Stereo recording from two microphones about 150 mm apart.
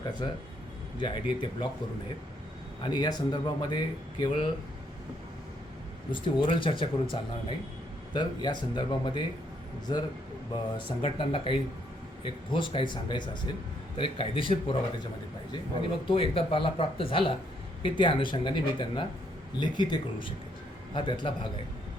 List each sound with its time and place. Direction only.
0.2 s speech: 35° left (ahead or behind)
2.8 s a man's voice: 30° left (ahead or behind)
6.1 s speech: 30° left (ahead or behind)
16.0 s speech: 35° left (ahead or behind)